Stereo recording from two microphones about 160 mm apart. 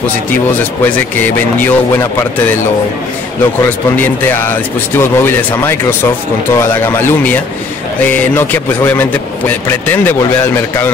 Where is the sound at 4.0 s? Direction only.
15° left (ahead or behind).